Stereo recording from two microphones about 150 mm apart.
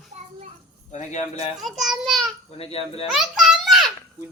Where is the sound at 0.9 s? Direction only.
50° left (ahead or behind).